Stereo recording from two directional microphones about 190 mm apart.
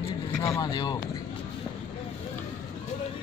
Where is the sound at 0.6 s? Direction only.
20° left (ahead or behind).